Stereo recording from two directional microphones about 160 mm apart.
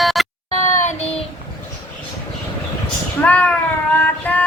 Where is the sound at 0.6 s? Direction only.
50° left (ahead or behind).